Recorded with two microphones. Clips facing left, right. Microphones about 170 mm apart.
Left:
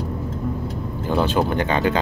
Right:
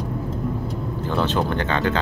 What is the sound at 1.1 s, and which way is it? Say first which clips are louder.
Speech: left 3 dB; 10° left (ahead or behind).